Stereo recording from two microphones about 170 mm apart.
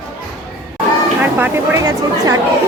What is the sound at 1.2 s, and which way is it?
Speech, 10° right (ahead or behind).